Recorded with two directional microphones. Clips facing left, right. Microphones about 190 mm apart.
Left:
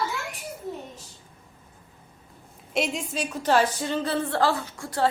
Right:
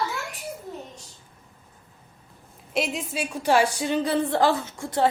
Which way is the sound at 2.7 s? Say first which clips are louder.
Even; centre (ahead or behind).